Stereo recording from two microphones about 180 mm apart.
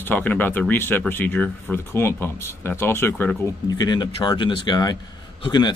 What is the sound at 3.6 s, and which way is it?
Speech, 25° left (ahead or behind).